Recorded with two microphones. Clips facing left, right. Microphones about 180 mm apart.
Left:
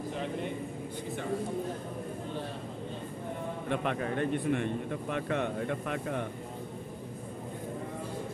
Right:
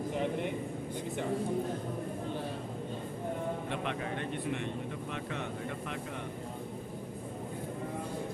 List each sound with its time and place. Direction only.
3.8 s a man's voice: 50° left (ahead or behind)
5.1 s speech: 60° left (ahead or behind)